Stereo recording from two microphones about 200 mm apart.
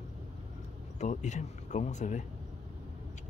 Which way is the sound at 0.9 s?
35° left (ahead or behind).